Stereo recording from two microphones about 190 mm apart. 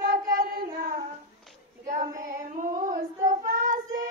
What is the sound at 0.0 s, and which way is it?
Child singing, 45° right (ahead or behind).